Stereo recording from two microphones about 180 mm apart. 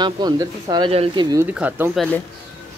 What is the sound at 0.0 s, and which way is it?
Speech, 25° right (ahead or behind).